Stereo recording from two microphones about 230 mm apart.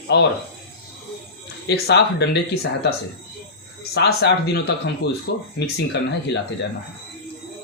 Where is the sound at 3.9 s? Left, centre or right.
Left.